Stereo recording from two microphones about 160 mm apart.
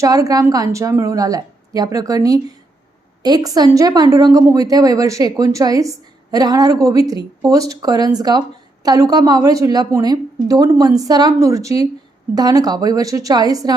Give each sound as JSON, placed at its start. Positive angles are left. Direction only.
{"t": 0.0, "sound": "a woman's voice", "side_deg": -20}